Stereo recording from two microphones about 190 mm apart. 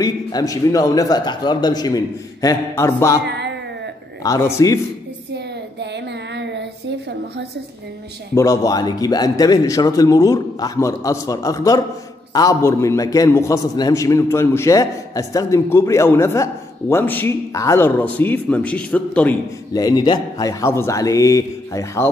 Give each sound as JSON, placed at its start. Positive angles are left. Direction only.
{"t": 0.0, "sound": "speech", "side_deg": 20}
{"t": 3.3, "sound": "music", "side_deg": -65}
{"t": 4.2, "sound": "a man's voice", "side_deg": 15}
{"t": 5.3, "sound": "child singing", "side_deg": -65}
{"t": 8.4, "sound": "a man's voice", "side_deg": 20}
{"t": 19.7, "sound": "a man's voice", "side_deg": 20}